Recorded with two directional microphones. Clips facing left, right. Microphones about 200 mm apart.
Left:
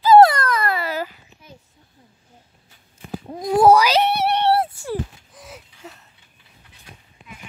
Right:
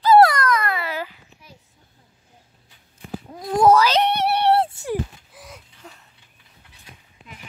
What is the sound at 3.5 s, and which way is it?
Cat, 10° left (ahead or behind).